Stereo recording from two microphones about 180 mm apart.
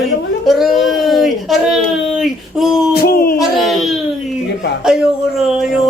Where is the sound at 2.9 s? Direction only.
60° left (ahead or behind).